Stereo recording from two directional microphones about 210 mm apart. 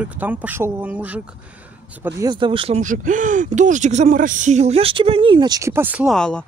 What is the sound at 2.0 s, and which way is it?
Speech, 20° right (ahead or behind).